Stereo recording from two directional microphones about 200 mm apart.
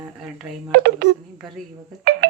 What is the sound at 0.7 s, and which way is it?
Speech, 50° right (ahead or behind).